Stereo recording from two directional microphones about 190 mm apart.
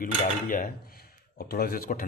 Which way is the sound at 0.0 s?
50° left (ahead or behind).